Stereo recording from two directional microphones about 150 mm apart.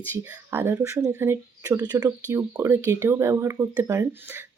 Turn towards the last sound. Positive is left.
turn(degrees=-15)  # may be behind; listen again after turning